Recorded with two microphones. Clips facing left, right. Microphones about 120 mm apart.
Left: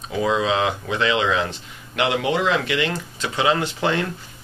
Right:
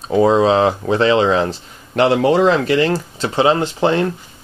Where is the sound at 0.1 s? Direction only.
35° right (ahead or behind).